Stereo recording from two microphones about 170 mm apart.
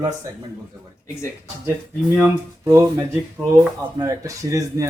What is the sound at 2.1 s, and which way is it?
Speech, 20° right (ahead or behind).